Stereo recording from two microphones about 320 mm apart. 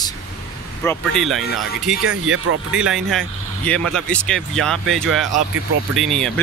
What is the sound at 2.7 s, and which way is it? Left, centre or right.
Speech, centre.